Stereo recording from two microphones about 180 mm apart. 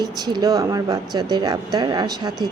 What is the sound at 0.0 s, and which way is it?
Speech, 25° right (ahead or behind).